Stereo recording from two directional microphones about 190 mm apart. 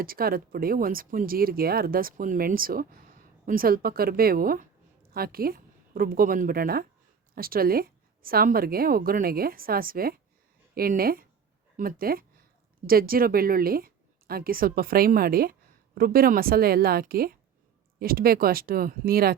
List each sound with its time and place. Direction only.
0.0 s a woman's voice: 50° right (ahead or behind)